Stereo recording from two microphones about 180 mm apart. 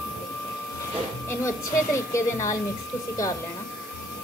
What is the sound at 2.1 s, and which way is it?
Speech, 15° left (ahead or behind).